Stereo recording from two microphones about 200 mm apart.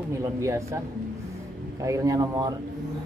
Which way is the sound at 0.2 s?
15° right (ahead or behind).